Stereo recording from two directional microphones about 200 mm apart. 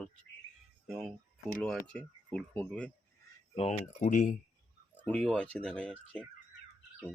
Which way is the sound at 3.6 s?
35° left (ahead or behind).